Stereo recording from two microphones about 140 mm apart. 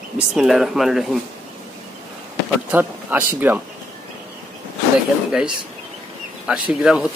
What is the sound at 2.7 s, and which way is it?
Speech, 15° right (ahead or behind).